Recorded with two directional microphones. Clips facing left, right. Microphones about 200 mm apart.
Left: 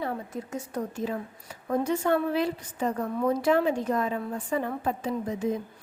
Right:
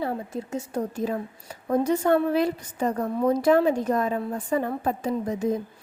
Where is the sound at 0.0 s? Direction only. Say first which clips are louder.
Right 3 dB; 30° right (ahead or behind).